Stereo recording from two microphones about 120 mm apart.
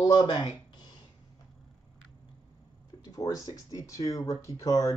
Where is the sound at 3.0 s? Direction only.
30° left (ahead or behind).